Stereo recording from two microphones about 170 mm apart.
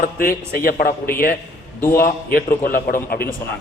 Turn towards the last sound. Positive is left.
turn(degrees=60)  # may be behind; listen again after turning